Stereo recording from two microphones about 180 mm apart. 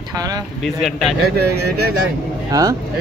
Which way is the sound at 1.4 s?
60° right (ahead or behind).